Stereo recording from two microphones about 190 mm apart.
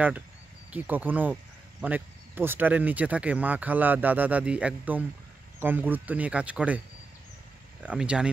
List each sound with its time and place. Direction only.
0.7 s speech: 10° right (ahead or behind)
7.8 s speech: 5° right (ahead or behind)